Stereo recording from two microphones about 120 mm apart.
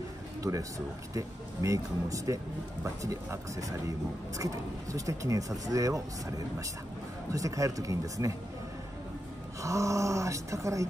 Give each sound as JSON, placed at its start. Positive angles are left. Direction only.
{"t": 0.4, "sound": "a man's voice", "side_deg": -25}
{"t": 9.6, "sound": "speech", "side_deg": -25}